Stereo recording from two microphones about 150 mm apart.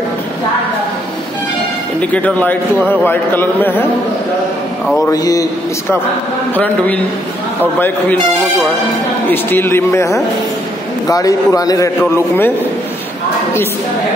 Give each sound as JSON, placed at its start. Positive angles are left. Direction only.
{"t": 2.0, "sound": "a man's voice", "side_deg": 10}
{"t": 5.1, "sound": "a man's voice", "side_deg": 25}
{"t": 6.5, "sound": "a man's voice", "side_deg": 10}
{"t": 9.3, "sound": "a man's voice", "side_deg": 15}
{"t": 12.0, "sound": "a man's voice", "side_deg": 15}